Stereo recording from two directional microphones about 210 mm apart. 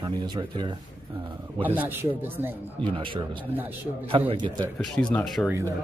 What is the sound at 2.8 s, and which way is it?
Speech, 25° right (ahead or behind).